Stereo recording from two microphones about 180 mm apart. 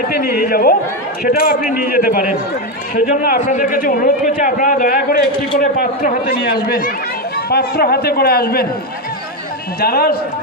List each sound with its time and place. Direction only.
0.1 s a man's voice: 60° left (ahead or behind)
9.8 s a man's voice: 60° left (ahead or behind)